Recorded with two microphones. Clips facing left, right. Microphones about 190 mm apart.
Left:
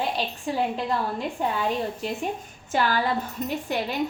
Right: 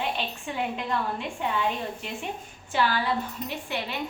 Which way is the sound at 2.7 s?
45° left (ahead or behind).